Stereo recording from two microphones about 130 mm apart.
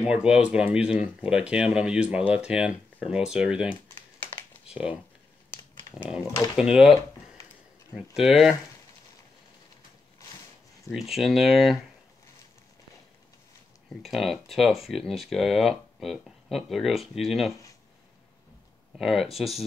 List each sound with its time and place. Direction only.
0.0 s speech: 5° right (ahead or behind)
4.6 s speech: 10° right (ahead or behind)
6.2 s speech: 20° left (ahead or behind)
6.5 s speech: 5° right (ahead or behind)
8.2 s speech: 5° right (ahead or behind)
10.9 s speech: centre (ahead or behind)
14.0 s speech: centre (ahead or behind)
18.9 s speech: centre (ahead or behind)